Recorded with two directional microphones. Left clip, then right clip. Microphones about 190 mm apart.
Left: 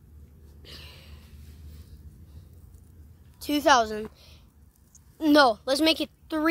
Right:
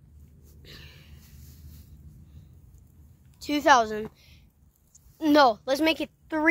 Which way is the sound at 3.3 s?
5° left (ahead or behind).